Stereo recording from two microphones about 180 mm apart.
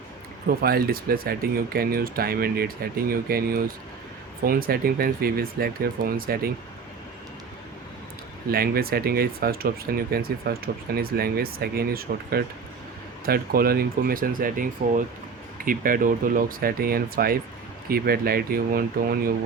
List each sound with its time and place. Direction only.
0.6 s speech: 55° right (ahead or behind)
8.4 s speech: 55° right (ahead or behind)